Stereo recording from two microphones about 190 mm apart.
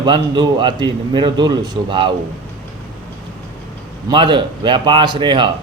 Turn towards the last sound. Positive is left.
turn(degrees=-25)  # may be behind; listen again after turning